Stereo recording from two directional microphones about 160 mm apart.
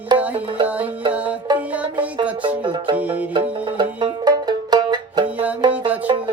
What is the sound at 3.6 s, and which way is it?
Music, 30° right (ahead or behind).